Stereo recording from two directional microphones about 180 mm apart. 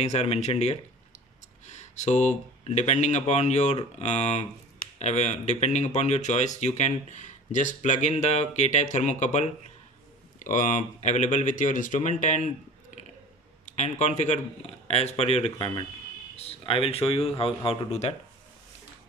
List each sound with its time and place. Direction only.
0.0 s speech: 35° left (ahead or behind)
13.7 s speech: 40° left (ahead or behind)